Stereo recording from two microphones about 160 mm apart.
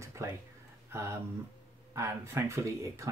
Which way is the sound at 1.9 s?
15° right (ahead or behind).